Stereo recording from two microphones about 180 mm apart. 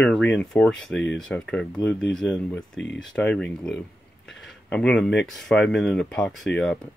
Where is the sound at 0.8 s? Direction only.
90° left.